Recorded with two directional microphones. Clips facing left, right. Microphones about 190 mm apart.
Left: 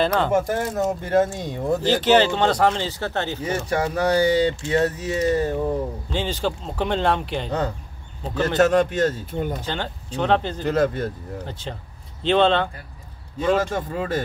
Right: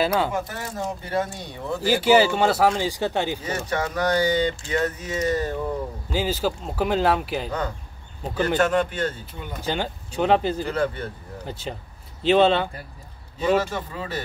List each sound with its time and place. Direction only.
0.0 s speech: 5° right (ahead or behind)
0.3 s speech: 45° left (ahead or behind)
1.8 s speech: 10° right (ahead or behind)
3.4 s speech: 30° left (ahead or behind)
6.0 s a man's voice: 5° right (ahead or behind)
7.4 s speech: 30° left (ahead or behind)
9.7 s speech: 10° right (ahead or behind)
10.7 s speech: 40° left (ahead or behind)
11.4 s speech: 10° right (ahead or behind)
13.6 s speech: 50° left (ahead or behind)